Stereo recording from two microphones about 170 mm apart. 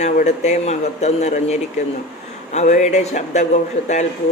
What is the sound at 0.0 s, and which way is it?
Speech, 45° left (ahead or behind).